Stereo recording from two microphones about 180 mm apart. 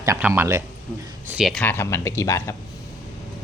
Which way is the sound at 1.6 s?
15° left (ahead or behind).